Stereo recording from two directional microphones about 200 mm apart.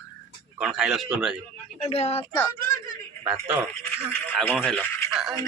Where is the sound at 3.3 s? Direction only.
10° right (ahead or behind).